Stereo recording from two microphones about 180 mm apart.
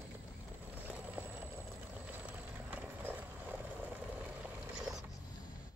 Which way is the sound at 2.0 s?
10° right (ahead or behind).